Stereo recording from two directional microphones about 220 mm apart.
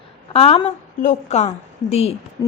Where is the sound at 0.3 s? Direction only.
25° left (ahead or behind).